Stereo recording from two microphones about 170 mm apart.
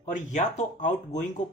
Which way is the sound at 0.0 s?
45° left (ahead or behind).